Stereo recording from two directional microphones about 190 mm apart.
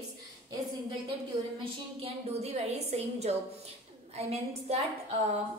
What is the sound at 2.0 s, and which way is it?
A woman's voice, 35° right (ahead or behind).